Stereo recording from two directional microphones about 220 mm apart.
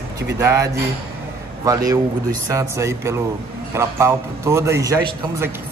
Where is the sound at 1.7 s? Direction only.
15° right (ahead or behind).